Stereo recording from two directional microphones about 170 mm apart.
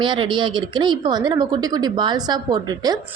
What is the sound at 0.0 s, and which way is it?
Speech, 30° right (ahead or behind).